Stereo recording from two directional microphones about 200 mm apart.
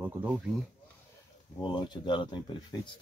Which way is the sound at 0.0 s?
10° right (ahead or behind).